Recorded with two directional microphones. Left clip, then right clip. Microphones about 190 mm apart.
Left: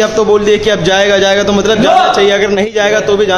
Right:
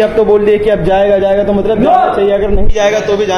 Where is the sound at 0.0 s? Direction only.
20° left (ahead or behind).